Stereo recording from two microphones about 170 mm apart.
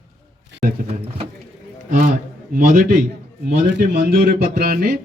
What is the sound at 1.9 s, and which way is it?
A man's voice, 50° right (ahead or behind).